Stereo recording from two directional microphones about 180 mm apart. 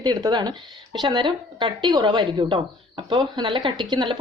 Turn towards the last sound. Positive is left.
turn(degrees=-25)  # may be behind; listen again after turning